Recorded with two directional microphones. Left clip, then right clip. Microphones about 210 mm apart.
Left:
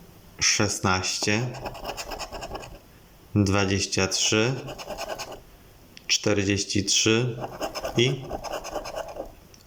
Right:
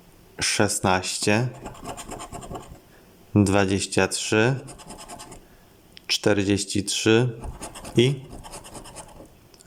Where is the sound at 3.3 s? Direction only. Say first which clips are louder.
Right 3 dB; 20° right (ahead or behind).